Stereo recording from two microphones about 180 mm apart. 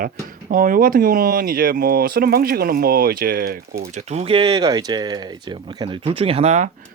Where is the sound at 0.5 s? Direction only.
50° right (ahead or behind).